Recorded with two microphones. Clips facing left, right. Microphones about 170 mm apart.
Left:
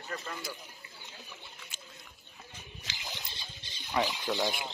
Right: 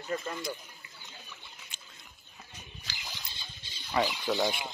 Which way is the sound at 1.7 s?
Centre (ahead or behind).